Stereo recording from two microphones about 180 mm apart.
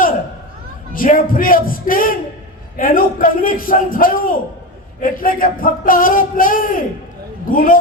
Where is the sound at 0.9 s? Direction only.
50° left (ahead or behind).